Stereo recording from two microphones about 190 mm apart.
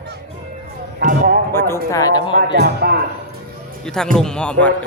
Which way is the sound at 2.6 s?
60° right (ahead or behind).